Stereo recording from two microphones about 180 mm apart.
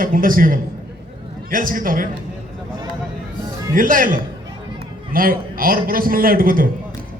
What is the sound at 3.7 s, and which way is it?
A man's voice, 50° right (ahead or behind).